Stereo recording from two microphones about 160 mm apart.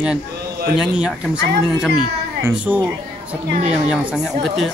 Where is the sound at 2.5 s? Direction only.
5° right (ahead or behind).